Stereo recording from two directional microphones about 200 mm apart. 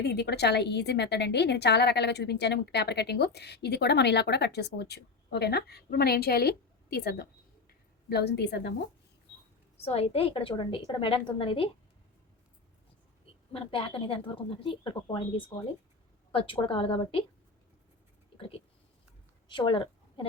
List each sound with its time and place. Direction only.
0.0 s a woman's voice: 55° left (ahead or behind)
9.7 s a woman's voice: 30° left (ahead or behind)
13.5 s a woman's voice: 25° left (ahead or behind)
18.3 s speech: 30° left (ahead or behind)
19.5 s a sound: 25° left (ahead or behind)